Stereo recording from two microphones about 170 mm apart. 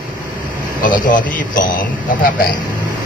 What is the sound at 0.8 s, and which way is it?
A man's voice, 55° left (ahead or behind).